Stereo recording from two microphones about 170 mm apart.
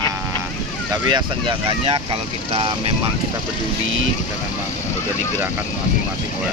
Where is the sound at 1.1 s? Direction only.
30° right (ahead or behind).